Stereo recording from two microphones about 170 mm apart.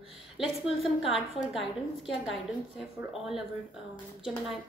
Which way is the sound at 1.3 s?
Centre (ahead or behind).